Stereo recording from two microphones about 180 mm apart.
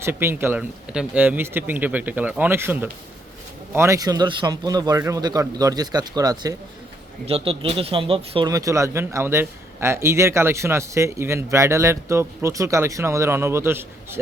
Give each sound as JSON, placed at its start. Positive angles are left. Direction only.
{"t": 0.0, "sound": "a man's voice", "side_deg": -15}
{"t": 7.3, "sound": "a man's voice", "side_deg": -35}
{"t": 8.4, "sound": "a man's voice", "side_deg": -20}